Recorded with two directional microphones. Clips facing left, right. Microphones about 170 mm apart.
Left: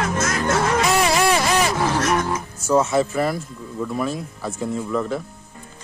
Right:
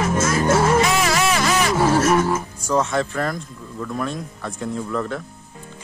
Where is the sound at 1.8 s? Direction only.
10° right (ahead or behind).